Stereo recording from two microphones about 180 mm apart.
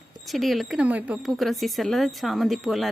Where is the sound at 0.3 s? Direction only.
Centre (ahead or behind).